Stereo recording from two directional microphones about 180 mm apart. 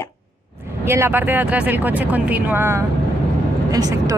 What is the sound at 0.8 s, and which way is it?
Speech, 15° right (ahead or behind).